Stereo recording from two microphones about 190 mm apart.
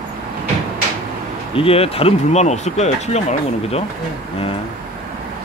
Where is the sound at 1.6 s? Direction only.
30° left (ahead or behind).